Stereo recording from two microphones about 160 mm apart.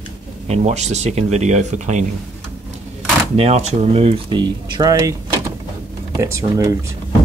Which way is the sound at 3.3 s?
40° right (ahead or behind).